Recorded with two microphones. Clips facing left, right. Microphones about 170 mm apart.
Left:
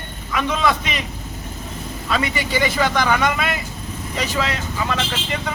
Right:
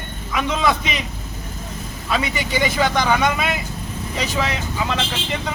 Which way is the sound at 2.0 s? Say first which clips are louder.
Even; 15° right (ahead or behind).